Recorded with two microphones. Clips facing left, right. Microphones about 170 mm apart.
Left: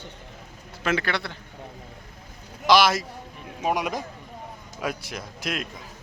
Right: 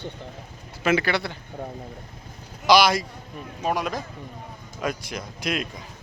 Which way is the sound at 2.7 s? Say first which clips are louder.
Right 1 dB; centre (ahead or behind).